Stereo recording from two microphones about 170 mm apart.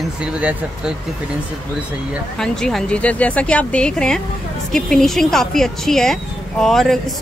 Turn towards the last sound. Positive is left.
turn(degrees=0)  # may be behind; listen again after turning